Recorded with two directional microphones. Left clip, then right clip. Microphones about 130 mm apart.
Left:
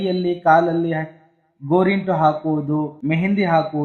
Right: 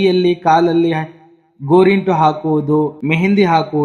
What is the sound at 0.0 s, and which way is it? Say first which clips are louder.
A man's voice: right 6 dB; 30° right (ahead or behind).